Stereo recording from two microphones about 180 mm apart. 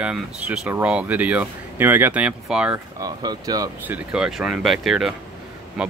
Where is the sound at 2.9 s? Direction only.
20° right (ahead or behind).